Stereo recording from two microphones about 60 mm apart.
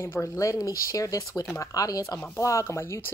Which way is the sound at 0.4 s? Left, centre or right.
Left.